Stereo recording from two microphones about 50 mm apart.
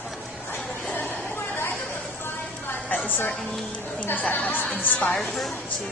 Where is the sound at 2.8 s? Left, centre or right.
Left.